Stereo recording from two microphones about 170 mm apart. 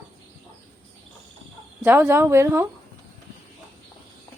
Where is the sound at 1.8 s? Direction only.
10° right (ahead or behind).